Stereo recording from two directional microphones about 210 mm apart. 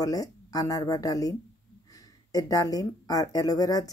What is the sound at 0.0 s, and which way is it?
Speech, 15° left (ahead or behind).